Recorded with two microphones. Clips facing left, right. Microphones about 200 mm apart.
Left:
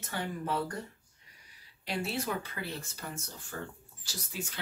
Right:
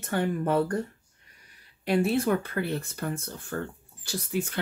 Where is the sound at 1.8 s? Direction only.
55° right (ahead or behind).